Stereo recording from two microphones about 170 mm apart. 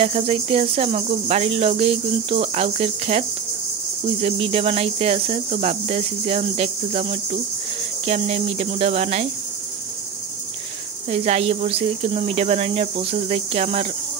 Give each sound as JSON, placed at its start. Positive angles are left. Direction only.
{"t": 0.0, "sound": "cricket", "side_deg": -35}
{"t": 11.1, "sound": "cricket", "side_deg": -40}